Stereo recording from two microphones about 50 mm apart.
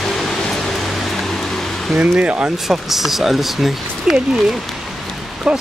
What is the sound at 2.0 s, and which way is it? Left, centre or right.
Speech, right.